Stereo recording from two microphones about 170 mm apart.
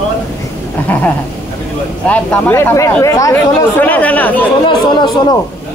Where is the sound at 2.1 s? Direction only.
10° left (ahead or behind).